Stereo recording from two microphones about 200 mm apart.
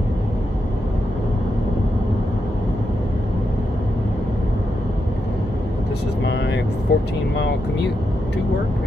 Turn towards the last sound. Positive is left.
turn(degrees=55)  # may be behind; listen again after turning